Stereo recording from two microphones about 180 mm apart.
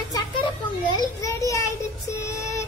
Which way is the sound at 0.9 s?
20° left (ahead or behind).